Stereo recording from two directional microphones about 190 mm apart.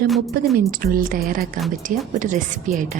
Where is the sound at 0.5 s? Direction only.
50° right (ahead or behind).